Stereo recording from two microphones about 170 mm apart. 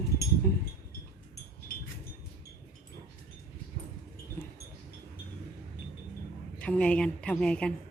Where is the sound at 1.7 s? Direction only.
60° left (ahead or behind).